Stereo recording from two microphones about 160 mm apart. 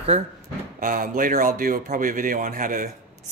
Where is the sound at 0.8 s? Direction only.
60° right (ahead or behind).